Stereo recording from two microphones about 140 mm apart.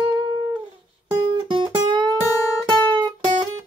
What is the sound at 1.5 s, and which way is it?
Music, 35° right (ahead or behind).